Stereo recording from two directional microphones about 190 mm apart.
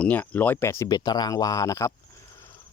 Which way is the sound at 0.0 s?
10° left (ahead or behind).